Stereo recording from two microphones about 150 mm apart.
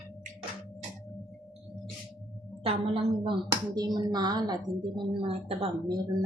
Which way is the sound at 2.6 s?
40° right (ahead or behind).